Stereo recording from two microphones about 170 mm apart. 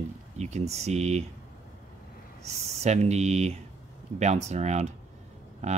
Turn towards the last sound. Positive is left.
turn(degrees=-40)  # may be behind; listen again after turning